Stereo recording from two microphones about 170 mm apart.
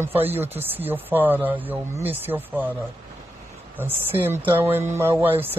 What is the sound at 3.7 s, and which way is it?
Speech, 10° right (ahead or behind).